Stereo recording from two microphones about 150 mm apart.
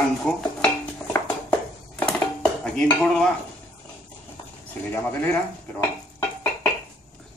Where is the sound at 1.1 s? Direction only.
10° left (ahead or behind).